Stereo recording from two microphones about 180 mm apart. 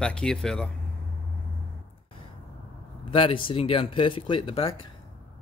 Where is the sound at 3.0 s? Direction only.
30° left (ahead or behind).